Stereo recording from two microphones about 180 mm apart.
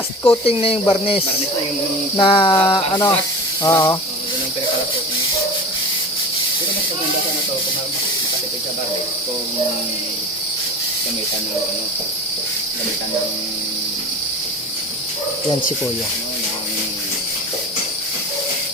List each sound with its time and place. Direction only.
0.4 s speech: 30° left (ahead or behind)
2.1 s a sound: 30° left (ahead or behind)
3.6 s snake: 15° left (ahead or behind)